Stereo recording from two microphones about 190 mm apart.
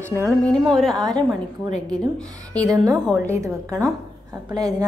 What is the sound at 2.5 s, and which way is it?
Speech, 20° right (ahead or behind).